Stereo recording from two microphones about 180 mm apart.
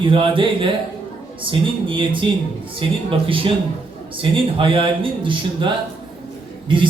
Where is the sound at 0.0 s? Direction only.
30° right (ahead or behind).